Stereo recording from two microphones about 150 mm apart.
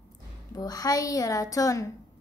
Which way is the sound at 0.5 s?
25° left (ahead or behind).